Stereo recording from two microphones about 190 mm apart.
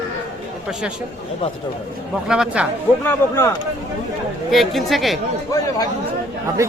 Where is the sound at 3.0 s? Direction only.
10° left (ahead or behind).